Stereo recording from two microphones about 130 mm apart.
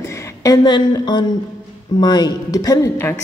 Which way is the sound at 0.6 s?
35° left (ahead or behind).